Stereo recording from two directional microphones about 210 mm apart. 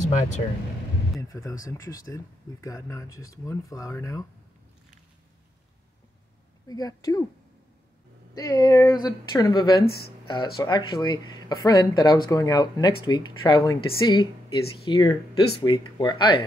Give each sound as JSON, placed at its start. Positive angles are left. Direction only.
{"t": 0.0, "sound": "speech", "side_deg": 35}
{"t": 1.3, "sound": "speech", "side_deg": 15}
{"t": 6.7, "sound": "speech", "side_deg": 15}
{"t": 8.4, "sound": "speech", "side_deg": 15}